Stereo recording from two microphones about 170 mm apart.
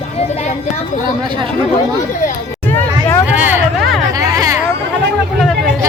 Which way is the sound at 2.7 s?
15° left (ahead or behind).